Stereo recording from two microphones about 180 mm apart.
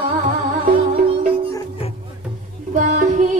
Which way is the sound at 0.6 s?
30° right (ahead or behind).